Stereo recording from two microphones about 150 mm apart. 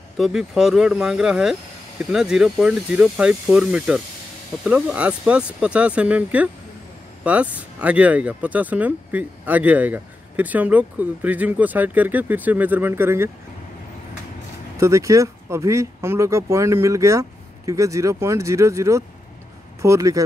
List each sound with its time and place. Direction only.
0.2 s speech: 5° right (ahead or behind)
14.8 s speech: 20° right (ahead or behind)